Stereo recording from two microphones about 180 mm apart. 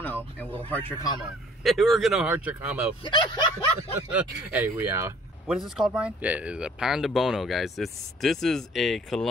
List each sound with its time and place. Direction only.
0.0 s a sound: 10° left (ahead or behind)
0.7 s speech: 10° left (ahead or behind)
1.6 s speech: centre (ahead or behind)
3.0 s speech: 25° left (ahead or behind)
4.1 s speech: 10° right (ahead or behind)
5.5 s speech: 5° right (ahead or behind)